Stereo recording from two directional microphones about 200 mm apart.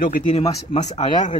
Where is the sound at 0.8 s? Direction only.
35° left (ahead or behind).